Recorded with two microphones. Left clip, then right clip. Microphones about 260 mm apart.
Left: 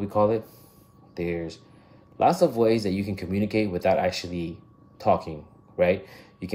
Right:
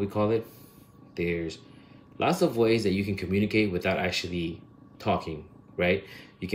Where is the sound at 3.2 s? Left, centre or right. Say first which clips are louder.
Right 1 dB; centre.